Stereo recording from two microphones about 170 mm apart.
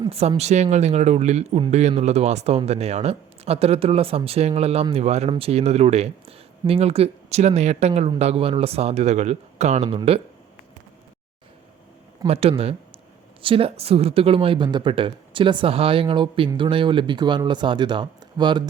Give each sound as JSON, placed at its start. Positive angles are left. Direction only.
{"t": 0.1, "sound": "speech", "side_deg": -35}
{"t": 12.3, "sound": "speech", "side_deg": -35}